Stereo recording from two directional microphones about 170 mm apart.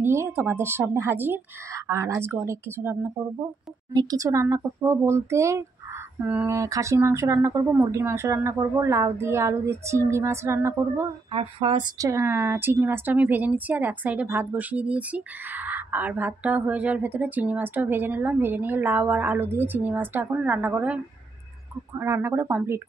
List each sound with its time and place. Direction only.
0.0 s a woman's voice: 15° right (ahead or behind)
3.9 s a woman's voice: 25° right (ahead or behind)
11.3 s speech: 35° right (ahead or behind)
12.0 s a woman's voice: 15° right (ahead or behind)